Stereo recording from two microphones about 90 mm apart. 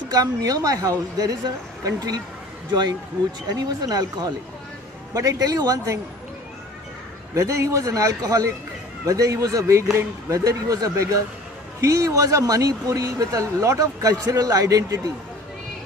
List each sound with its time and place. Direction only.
0.1 s speech: 40° right (ahead or behind)
3.5 s speech: 45° right (ahead or behind)
7.3 s speech: 35° right (ahead or behind)